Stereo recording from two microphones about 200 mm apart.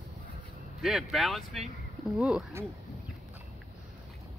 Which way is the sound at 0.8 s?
Centre (ahead or behind).